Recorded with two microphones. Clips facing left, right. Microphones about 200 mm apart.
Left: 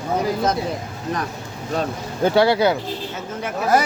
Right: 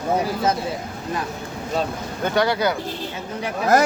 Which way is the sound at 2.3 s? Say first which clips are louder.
Left 4 dB; 30° left (ahead or behind).